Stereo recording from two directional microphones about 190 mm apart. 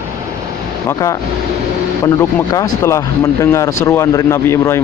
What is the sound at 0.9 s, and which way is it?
Speech, 15° left (ahead or behind).